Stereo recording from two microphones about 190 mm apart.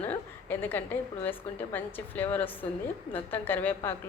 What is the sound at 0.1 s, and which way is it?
A woman's voice, 10° left (ahead or behind).